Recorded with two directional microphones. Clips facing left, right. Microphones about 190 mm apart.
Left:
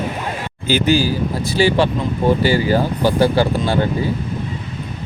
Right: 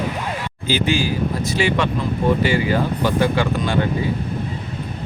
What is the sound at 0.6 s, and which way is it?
Speech, 45° left (ahead or behind).